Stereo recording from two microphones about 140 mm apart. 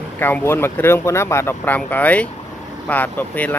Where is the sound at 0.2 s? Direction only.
15° left (ahead or behind).